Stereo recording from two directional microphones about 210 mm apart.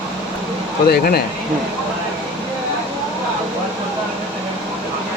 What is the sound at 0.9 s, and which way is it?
Speech, 45° left (ahead or behind).